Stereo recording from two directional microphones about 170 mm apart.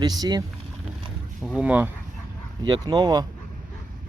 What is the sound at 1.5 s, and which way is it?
Speech, 10° right (ahead or behind).